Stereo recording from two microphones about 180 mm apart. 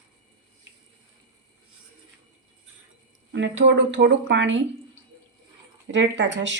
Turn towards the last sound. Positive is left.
turn(degrees=-90)